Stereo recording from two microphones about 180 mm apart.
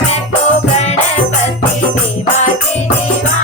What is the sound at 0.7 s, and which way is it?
Music, 35° left (ahead or behind).